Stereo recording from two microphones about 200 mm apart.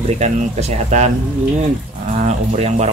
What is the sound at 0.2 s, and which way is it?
Speech, 35° right (ahead or behind).